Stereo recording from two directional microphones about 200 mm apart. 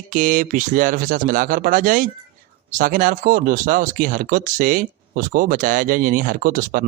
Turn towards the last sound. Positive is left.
turn(degrees=-45)  # may be behind; listen again after turning